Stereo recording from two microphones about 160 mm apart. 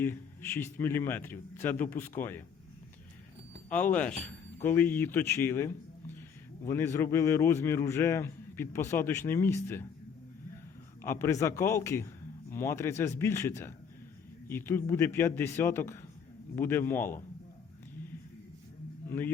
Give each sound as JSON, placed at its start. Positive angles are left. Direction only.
{"t": 0.0, "sound": "a man's voice", "side_deg": 15}
{"t": 3.7, "sound": "a man's voice", "side_deg": 10}
{"t": 11.0, "sound": "a man's voice", "side_deg": 15}